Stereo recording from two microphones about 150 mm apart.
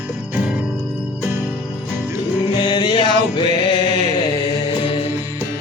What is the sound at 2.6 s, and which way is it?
Music, 30° left (ahead or behind).